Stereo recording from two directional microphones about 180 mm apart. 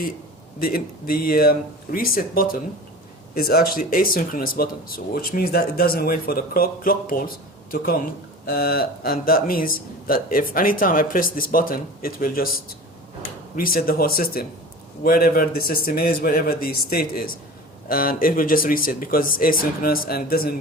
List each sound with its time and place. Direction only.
0.6 s a man's voice: 55° left (ahead or behind)